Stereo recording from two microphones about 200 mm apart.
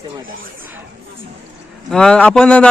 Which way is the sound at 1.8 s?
5° left (ahead or behind).